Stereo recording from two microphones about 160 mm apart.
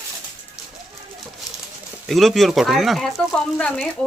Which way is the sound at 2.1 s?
Centre (ahead or behind).